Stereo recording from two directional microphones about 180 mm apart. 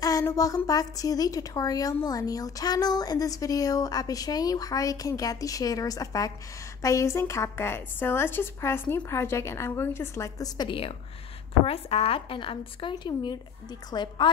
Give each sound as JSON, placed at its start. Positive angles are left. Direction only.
{"t": 0.0, "sound": "a woman's voice", "side_deg": 20}